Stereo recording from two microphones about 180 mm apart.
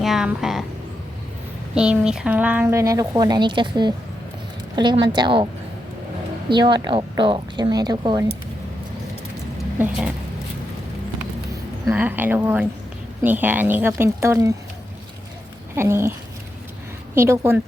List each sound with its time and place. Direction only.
0.0 s speech: centre (ahead or behind)
1.7 s a woman's voice: 5° right (ahead or behind); by 5.5 s 25° right (ahead or behind)
6.5 s a woman's voice: 25° right (ahead or behind)
9.7 s speech: 10° right (ahead or behind)
11.9 s speech: 10° right (ahead or behind)
15.7 s speech: 15° right (ahead or behind)
17.2 s speech: 15° right (ahead or behind)